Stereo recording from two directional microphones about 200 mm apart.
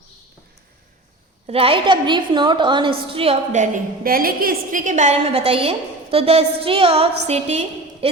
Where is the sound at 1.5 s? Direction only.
25° right (ahead or behind).